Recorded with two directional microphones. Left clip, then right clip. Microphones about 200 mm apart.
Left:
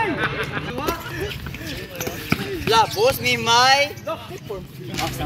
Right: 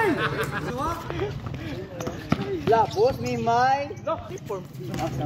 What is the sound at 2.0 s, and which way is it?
Basketball bounce, centre (ahead or behind).